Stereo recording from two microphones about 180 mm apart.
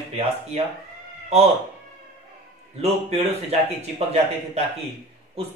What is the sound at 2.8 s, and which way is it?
Speech, 35° right (ahead or behind).